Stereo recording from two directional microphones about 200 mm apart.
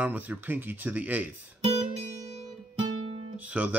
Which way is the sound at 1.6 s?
30° right (ahead or behind).